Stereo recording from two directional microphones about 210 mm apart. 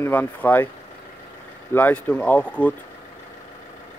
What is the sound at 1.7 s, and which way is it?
Speech, 5° left (ahead or behind).